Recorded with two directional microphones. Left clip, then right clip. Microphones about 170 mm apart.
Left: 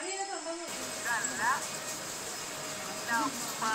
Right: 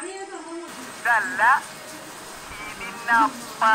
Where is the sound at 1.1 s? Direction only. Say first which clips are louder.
Right 13 dB; 70° right (ahead or behind).